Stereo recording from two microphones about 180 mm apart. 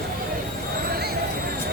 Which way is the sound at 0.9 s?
60° right (ahead or behind).